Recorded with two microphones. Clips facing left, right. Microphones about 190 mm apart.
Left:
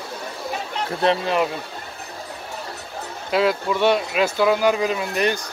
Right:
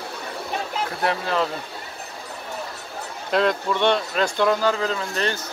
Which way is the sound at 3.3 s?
5° left (ahead or behind).